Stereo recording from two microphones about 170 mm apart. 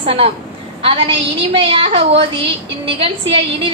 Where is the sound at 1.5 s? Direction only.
30° right (ahead or behind).